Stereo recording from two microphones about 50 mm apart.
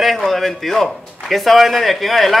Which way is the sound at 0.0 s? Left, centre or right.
Centre.